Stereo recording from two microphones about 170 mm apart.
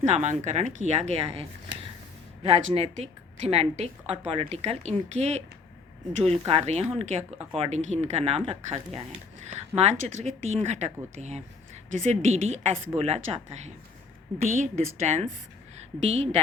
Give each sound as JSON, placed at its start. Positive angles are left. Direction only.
{"t": 0.0, "sound": "a woman's voice", "side_deg": -45}
{"t": 6.5, "sound": "a woman's voice", "side_deg": -40}